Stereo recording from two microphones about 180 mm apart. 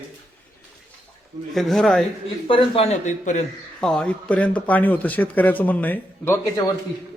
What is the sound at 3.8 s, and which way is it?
Speech, 5° left (ahead or behind).